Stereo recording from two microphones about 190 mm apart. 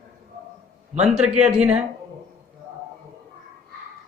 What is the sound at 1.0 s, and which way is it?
Speech, 5° right (ahead or behind).